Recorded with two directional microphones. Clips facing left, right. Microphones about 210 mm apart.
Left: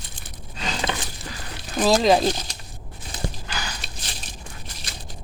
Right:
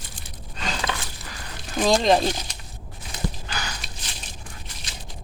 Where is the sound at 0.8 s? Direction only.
25° left (ahead or behind).